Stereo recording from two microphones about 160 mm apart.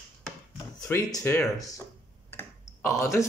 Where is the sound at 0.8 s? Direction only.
15° left (ahead or behind).